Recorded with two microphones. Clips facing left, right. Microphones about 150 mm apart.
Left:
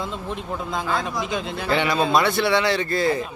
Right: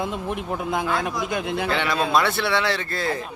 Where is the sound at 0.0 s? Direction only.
15° right (ahead or behind).